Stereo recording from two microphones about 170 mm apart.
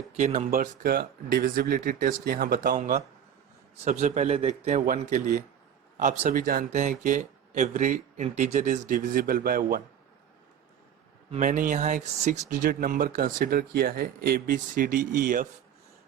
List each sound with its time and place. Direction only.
0.2 s speech: 45° right (ahead or behind)
3.8 s speech: 45° right (ahead or behind); by 9.8 s 60° right (ahead or behind)
11.3 s speech: 50° right (ahead or behind)